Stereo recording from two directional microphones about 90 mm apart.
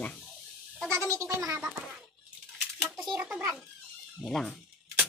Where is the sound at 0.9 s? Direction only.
35° right (ahead or behind).